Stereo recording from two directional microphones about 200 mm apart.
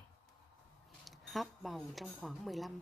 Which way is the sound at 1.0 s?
Centre (ahead or behind).